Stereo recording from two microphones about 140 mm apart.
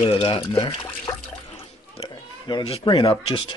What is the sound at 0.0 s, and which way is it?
Speech, 40° left (ahead or behind).